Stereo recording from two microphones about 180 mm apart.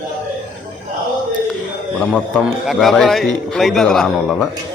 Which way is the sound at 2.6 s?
Centre (ahead or behind).